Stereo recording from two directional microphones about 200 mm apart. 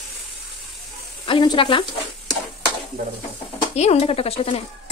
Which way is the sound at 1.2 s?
25° left (ahead or behind).